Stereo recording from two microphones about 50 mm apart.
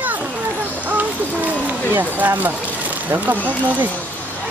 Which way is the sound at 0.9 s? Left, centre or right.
Right.